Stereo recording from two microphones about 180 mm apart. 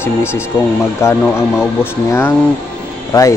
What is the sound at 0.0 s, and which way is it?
A man's voice, 15° left (ahead or behind).